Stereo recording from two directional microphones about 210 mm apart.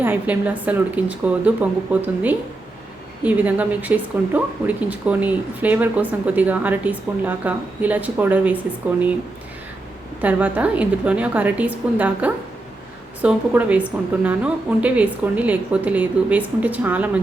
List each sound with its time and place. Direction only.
0.0 s speech: 10° right (ahead or behind)
10.2 s speech: 5° right (ahead or behind)